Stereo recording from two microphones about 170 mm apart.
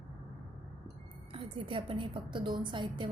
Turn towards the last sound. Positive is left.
turn(degrees=-30)  # may be behind; listen again after turning